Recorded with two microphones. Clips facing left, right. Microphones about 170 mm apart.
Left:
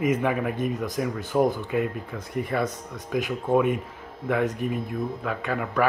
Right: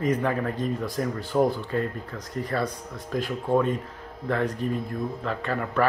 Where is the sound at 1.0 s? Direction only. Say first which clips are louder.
Left 1 dB; 5° left (ahead or behind).